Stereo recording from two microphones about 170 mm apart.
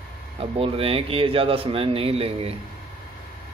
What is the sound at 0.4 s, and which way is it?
A man's voice, 35° right (ahead or behind).